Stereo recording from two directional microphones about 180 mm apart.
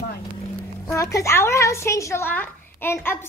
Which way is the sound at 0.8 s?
15° left (ahead or behind).